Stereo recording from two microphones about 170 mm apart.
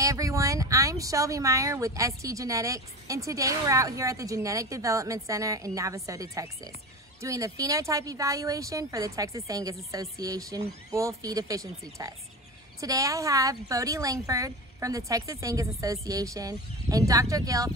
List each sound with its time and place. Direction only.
0.0 s speech: 20° right (ahead or behind)